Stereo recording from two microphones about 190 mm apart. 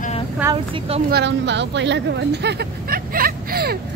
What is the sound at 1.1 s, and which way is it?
Speech, 65° right (ahead or behind).